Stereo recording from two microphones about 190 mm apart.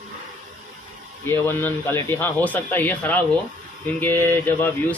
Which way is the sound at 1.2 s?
10° left (ahead or behind).